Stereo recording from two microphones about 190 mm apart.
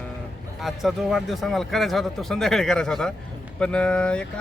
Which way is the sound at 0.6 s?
Centre (ahead or behind).